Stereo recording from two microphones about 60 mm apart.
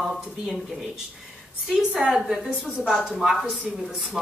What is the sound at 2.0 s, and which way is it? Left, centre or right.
Speech, centre.